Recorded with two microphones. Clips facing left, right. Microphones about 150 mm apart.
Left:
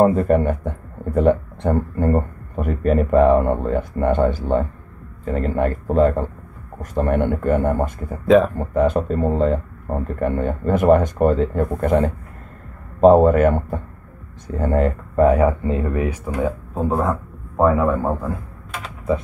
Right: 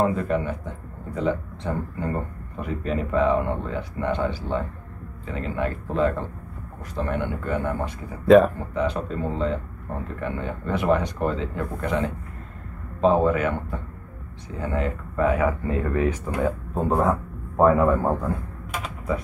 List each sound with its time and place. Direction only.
0.0 s speech: 40° left (ahead or behind)
8.3 s speech: centre (ahead or behind)
8.5 s speech: 45° left (ahead or behind)
15.6 s speech: 25° left (ahead or behind)
16.0 s speech: 5° left (ahead or behind)